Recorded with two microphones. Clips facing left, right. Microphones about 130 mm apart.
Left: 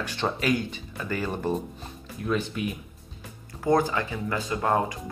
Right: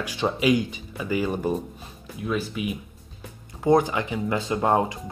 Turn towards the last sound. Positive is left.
turn(degrees=-25)  # may be behind; listen again after turning